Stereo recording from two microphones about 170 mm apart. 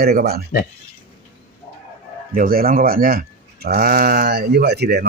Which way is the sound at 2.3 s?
60° right (ahead or behind).